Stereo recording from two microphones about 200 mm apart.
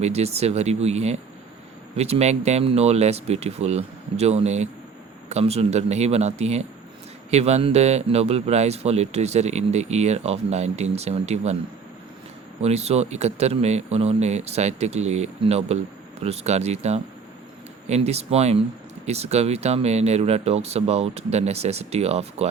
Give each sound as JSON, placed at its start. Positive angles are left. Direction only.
{"t": 0.0, "sound": "a man's voice", "side_deg": -30}
{"t": 12.6, "sound": "a man's voice", "side_deg": -30}